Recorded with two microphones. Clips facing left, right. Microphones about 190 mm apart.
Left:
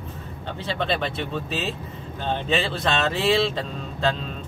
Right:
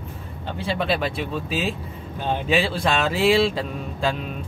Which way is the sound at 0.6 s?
10° right (ahead or behind).